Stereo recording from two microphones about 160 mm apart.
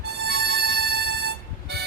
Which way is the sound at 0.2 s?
90° right.